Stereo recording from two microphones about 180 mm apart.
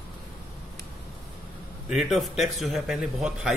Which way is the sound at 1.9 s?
Centre (ahead or behind).